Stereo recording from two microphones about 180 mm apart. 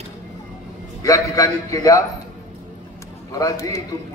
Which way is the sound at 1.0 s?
20° left (ahead or behind).